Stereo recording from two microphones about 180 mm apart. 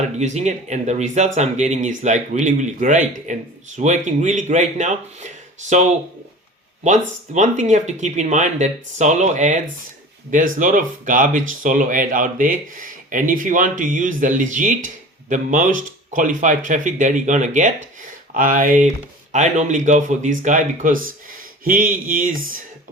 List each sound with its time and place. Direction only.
0.2 s speech: 40° right (ahead or behind)